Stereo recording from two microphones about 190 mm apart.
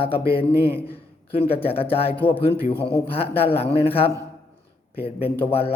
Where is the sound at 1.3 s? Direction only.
30° left (ahead or behind).